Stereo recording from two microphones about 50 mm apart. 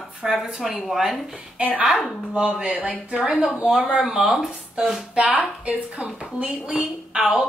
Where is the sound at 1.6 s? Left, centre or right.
Right.